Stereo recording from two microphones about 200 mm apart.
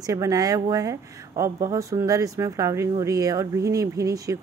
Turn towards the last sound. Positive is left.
turn(degrees=-15)  # may be behind; listen again after turning